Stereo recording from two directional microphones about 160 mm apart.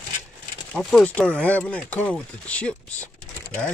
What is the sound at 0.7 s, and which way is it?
Speech, 5° left (ahead or behind).